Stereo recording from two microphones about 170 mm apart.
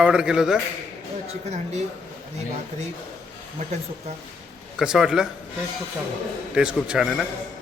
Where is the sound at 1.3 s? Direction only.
40° right (ahead or behind).